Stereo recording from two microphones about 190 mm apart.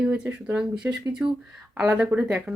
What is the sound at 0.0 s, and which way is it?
Speech, 10° right (ahead or behind).